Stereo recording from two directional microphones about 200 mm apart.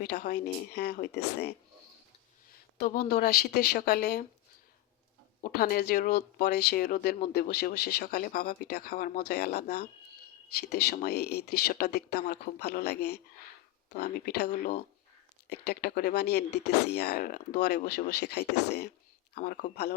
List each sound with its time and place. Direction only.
0.0 s speech: 50° left (ahead or behind)
2.5 s speech: 50° left (ahead or behind)
5.4 s speech: 45° left (ahead or behind)